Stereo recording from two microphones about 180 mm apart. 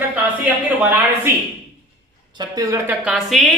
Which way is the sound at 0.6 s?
10° right (ahead or behind).